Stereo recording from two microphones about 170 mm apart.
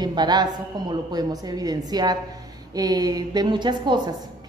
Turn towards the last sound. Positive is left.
turn(degrees=-25)  # may be behind; listen again after turning